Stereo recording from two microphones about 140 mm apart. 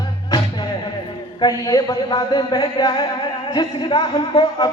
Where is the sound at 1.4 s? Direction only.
25° left (ahead or behind).